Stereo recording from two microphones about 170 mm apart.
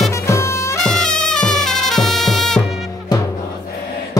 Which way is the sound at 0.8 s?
5° left (ahead or behind).